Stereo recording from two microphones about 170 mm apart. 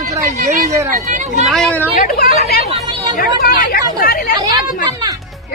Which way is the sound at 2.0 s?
60° left (ahead or behind).